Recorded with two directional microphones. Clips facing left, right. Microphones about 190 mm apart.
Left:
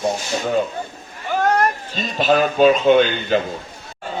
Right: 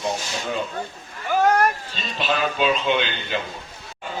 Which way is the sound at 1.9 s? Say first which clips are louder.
Left 8 dB; 45° left (ahead or behind).